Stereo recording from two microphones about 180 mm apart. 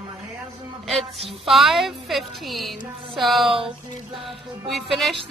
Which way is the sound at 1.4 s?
Centre (ahead or behind).